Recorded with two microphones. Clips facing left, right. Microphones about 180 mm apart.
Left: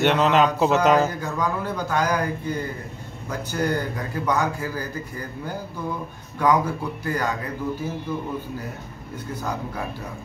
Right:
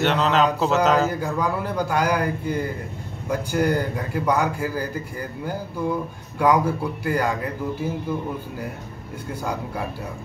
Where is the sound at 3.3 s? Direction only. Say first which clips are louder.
Right 3 dB; 10° right (ahead or behind).